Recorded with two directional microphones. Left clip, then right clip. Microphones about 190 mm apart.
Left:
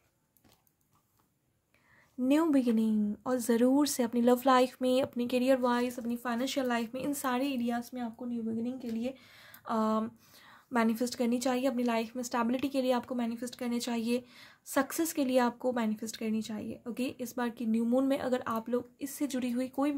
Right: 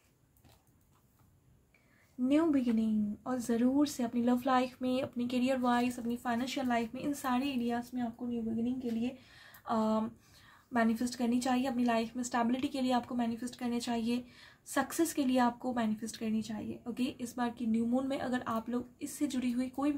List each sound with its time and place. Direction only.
2.2 s speech: 45° left (ahead or behind)